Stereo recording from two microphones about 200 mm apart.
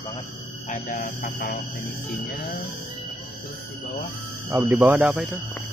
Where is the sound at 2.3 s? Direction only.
55° left (ahead or behind).